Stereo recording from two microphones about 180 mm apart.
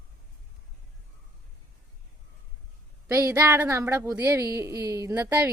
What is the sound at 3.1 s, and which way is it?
A woman's voice, 15° right (ahead or behind).